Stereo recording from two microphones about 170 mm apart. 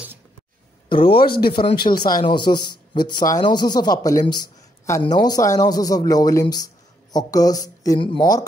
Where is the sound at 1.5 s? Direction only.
30° left (ahead or behind).